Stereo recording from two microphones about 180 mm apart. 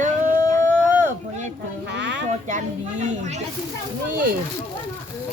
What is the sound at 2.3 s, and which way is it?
Speech, 40° right (ahead or behind).